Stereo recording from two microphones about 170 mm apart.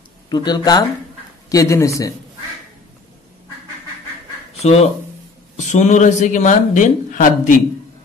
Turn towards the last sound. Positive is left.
turn(degrees=50)  # may be behind; listen again after turning